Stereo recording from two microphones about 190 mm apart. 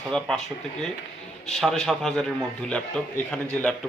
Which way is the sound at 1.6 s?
Centre (ahead or behind).